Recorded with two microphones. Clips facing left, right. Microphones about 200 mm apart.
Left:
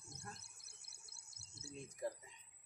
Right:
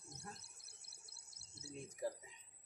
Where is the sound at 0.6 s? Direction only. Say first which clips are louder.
Right 1 dB; 50° left (ahead or behind).